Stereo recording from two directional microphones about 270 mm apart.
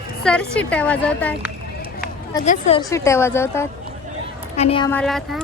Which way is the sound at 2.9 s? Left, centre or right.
Centre.